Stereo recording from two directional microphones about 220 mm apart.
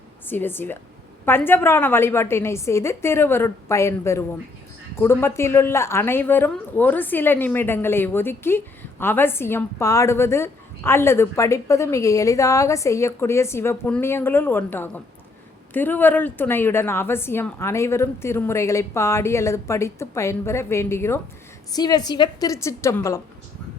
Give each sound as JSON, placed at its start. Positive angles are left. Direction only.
{"t": 0.3, "sound": "speech", "side_deg": 10}